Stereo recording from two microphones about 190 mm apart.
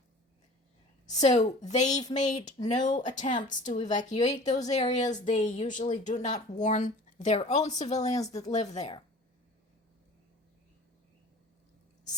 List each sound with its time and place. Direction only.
1.2 s a woman's voice: 35° left (ahead or behind)